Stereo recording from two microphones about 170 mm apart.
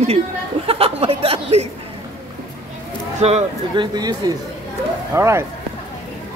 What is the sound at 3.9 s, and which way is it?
Speech, 20° right (ahead or behind).